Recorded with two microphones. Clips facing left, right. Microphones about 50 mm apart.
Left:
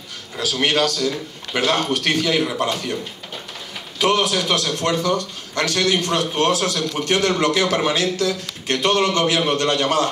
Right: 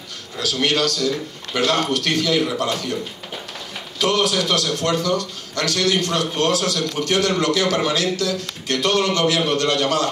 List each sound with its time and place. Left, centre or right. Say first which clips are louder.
0.4 s a man's voice: left 1 dB; centre
4.0 s a man's voice: left 1 dB; left